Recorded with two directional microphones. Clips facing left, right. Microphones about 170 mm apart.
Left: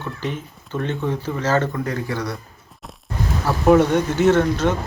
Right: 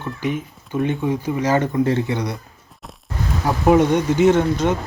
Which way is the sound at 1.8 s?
25° right (ahead or behind).